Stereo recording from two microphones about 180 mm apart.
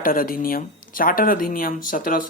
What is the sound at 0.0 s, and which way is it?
Speech, 50° left (ahead or behind).